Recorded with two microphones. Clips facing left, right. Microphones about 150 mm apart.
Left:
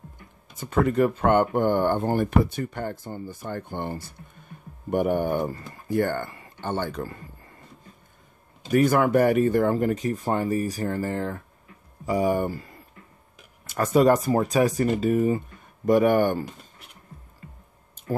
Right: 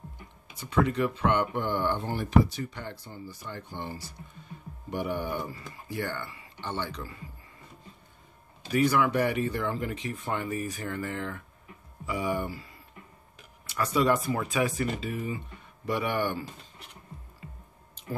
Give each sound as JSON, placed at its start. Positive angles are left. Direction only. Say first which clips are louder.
{"t": 0.6, "sound": "speech", "louder": "left 5 dB", "side_deg": 45}
{"t": 8.6, "sound": "speech", "louder": "left 5 dB", "side_deg": 45}